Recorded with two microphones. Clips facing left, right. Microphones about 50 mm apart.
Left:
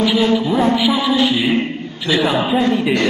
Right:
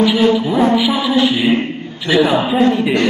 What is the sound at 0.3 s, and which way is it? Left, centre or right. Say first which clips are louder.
Speech: right 2 dB; centre.